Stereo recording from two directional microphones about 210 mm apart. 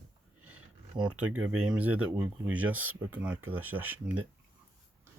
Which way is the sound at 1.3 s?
90° right.